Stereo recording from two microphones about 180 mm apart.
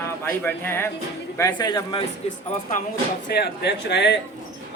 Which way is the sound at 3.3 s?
65° left (ahead or behind).